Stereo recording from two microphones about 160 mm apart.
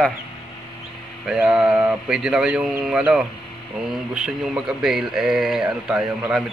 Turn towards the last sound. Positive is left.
turn(degrees=-5)  # may be behind; listen again after turning